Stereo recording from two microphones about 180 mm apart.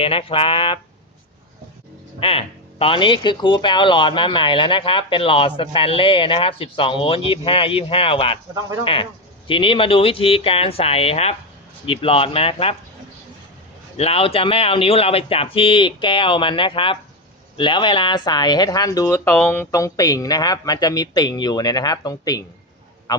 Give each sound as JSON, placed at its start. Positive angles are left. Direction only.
{"t": 0.0, "sound": "speech", "side_deg": 30}
{"t": 2.2, "sound": "speech", "side_deg": 30}
{"t": 13.9, "sound": "speech", "side_deg": 35}